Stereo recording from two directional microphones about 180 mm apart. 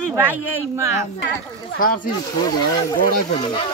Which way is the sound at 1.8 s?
50° left (ahead or behind).